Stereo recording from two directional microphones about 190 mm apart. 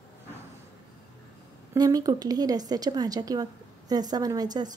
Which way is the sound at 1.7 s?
20° right (ahead or behind).